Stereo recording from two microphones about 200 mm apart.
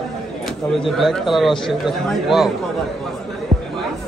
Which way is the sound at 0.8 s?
Centre (ahead or behind).